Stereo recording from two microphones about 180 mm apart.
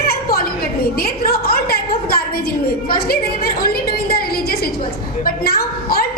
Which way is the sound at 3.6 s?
55° left (ahead or behind).